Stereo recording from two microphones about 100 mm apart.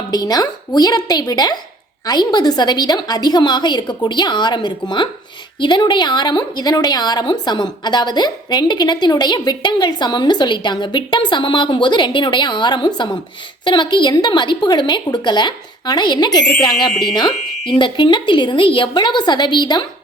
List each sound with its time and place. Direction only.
0.1 s a woman's voice: 40° left (ahead or behind)